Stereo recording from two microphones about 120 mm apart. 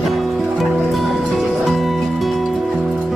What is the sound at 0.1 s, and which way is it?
Music, centre (ahead or behind).